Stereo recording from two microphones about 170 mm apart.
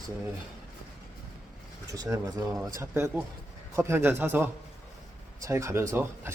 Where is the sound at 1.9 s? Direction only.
20° right (ahead or behind).